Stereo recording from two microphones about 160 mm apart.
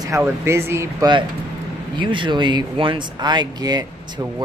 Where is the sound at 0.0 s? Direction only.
20° right (ahead or behind).